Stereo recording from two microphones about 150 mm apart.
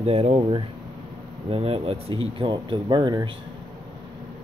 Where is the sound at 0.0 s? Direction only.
45° right (ahead or behind).